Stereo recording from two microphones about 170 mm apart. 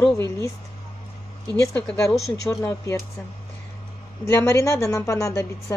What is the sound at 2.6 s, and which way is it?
Speech, 15° left (ahead or behind).